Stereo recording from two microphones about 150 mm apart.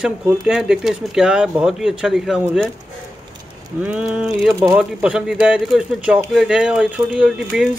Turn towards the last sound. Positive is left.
turn(degrees=-5)  # may be behind; listen again after turning